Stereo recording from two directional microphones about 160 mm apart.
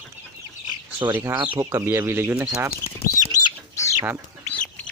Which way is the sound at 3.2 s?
20° right (ahead or behind).